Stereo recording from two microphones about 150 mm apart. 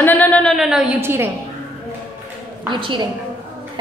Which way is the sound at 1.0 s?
15° right (ahead or behind).